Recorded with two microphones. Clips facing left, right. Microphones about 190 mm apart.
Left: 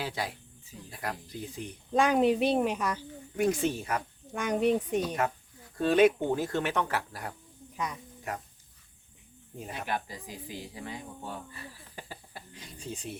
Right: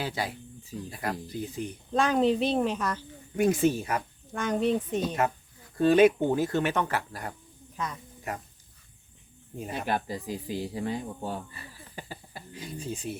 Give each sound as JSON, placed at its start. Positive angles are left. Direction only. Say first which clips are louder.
{"t": 0.0, "sound": "speech", "louder": "right 2 dB", "side_deg": 0}
{"t": 1.9, "sound": "speech", "louder": "even", "side_deg": 15}
{"t": 3.3, "sound": "speech", "louder": "right 4 dB", "side_deg": -5}
{"t": 4.3, "sound": "speech", "louder": "even", "side_deg": 15}
{"t": 5.7, "sound": "speech", "louder": "right 3 dB", "side_deg": 0}
{"t": 9.7, "sound": "speech", "louder": "right 5 dB", "side_deg": -35}
{"t": 11.5, "sound": "speech", "louder": "right 1 dB", "side_deg": 0}